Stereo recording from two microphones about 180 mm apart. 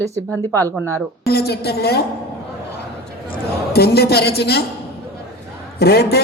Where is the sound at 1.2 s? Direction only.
60° left (ahead or behind).